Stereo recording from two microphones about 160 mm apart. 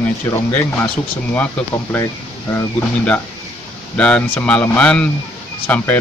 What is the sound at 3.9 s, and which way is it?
Speech, 5° left (ahead or behind).